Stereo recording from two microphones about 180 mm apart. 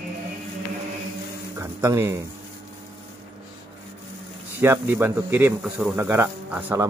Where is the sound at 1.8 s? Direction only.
15° right (ahead or behind).